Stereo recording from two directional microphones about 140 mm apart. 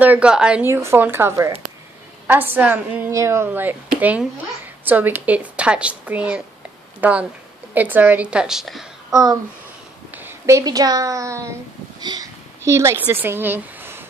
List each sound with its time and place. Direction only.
0.0 s speech: 10° right (ahead or behind)
0.7 s speech: 20° right (ahead or behind); by 8.8 s 5° right (ahead or behind)
9.1 s speech: 25° right (ahead or behind)